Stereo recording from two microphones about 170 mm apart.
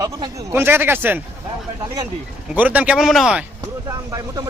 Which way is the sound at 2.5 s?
10° right (ahead or behind).